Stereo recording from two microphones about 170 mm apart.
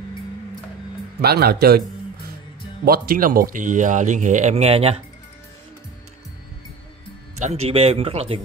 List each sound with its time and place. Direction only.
1.2 s a man's voice: 65° right (ahead or behind)
2.8 s speech: 60° right (ahead or behind); by 5.0 s 35° right (ahead or behind)
7.3 s speech: 40° right (ahead or behind)